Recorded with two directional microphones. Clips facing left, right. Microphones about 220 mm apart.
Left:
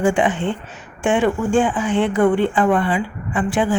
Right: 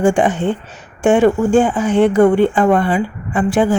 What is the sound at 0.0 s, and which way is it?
Speech, 45° right (ahead or behind).